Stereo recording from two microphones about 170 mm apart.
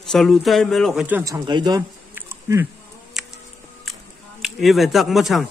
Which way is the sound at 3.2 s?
Centre (ahead or behind).